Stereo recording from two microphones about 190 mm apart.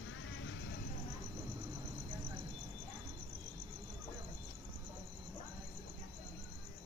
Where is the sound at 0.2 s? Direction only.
85° left.